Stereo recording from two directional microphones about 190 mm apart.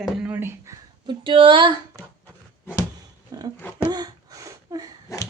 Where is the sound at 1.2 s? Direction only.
25° right (ahead or behind).